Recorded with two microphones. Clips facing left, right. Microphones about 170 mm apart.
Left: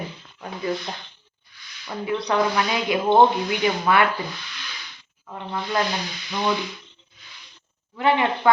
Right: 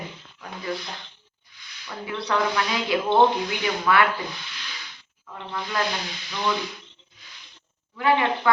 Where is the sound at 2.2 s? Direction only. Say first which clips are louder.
Left 1 dB; 20° left (ahead or behind).